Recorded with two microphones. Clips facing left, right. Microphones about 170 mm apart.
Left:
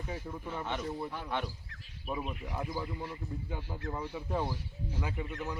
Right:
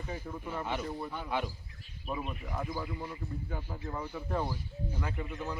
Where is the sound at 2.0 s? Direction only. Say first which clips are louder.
Even; 5° left (ahead or behind).